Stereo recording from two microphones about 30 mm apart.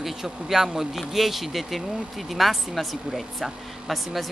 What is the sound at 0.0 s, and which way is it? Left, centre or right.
Speech, centre.